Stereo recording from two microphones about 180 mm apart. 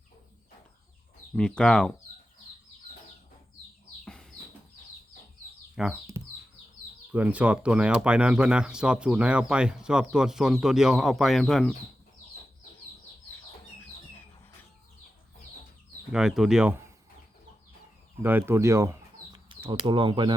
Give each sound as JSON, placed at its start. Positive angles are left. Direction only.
{"t": 1.4, "sound": "speech", "side_deg": 5}
{"t": 4.0, "sound": "chicken", "side_deg": 5}
{"t": 5.7, "sound": "speech", "side_deg": 0}
{"t": 7.1, "sound": "speech", "side_deg": -10}
{"t": 16.1, "sound": "speech", "side_deg": 0}
{"t": 18.2, "sound": "speech", "side_deg": -10}
{"t": 19.8, "sound": "speech", "side_deg": -25}